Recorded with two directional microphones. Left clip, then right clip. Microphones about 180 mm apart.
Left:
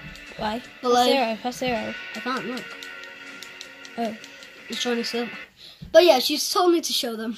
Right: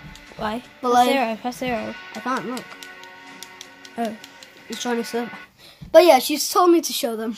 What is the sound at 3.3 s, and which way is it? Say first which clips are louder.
Music: left 1 dB; 60° right (ahead or behind).